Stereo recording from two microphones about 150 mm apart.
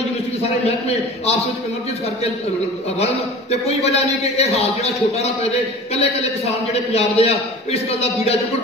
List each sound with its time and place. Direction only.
1.2 s a man's voice: 45° left (ahead or behind)
3.6 s a man's voice: 45° left (ahead or behind)